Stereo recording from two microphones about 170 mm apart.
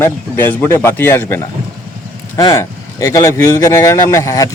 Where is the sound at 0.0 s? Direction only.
15° left (ahead or behind).